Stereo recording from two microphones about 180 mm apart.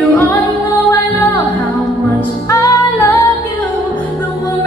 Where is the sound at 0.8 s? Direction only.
20° left (ahead or behind).